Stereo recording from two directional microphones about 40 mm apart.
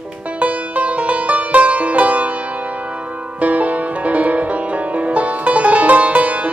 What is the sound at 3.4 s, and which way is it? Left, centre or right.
Music, right.